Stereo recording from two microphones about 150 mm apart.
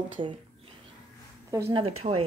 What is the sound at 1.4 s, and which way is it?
Speech, 20° right (ahead or behind).